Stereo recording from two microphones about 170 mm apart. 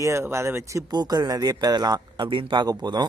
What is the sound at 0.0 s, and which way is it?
Speech, 15° right (ahead or behind).